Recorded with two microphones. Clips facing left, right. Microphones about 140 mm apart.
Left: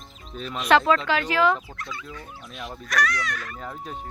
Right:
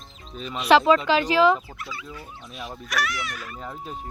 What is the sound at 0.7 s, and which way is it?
Turkey, 20° right (ahead or behind).